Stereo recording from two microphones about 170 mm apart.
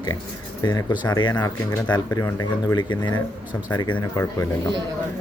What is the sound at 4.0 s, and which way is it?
Speech, 15° left (ahead or behind).